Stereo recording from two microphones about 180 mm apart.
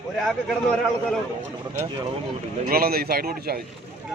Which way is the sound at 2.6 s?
55° right (ahead or behind).